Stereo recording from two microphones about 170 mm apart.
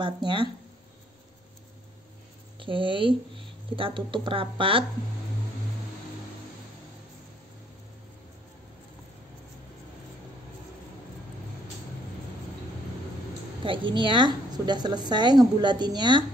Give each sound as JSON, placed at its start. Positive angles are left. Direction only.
{"t": 0.0, "sound": "a woman's voice", "side_deg": -30}
{"t": 2.6, "sound": "speech", "side_deg": -30}
{"t": 13.7, "sound": "a woman's voice", "side_deg": -30}